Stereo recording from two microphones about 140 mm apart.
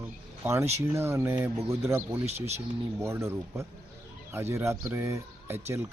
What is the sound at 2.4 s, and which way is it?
Speech, 50° right (ahead or behind).